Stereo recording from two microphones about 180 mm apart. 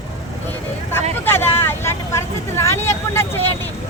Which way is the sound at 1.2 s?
10° left (ahead or behind).